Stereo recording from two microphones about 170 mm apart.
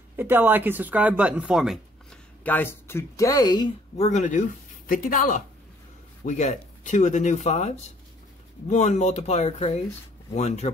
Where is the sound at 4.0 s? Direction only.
45° left (ahead or behind).